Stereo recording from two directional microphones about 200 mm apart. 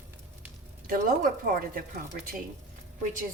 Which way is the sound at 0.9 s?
45° right (ahead or behind).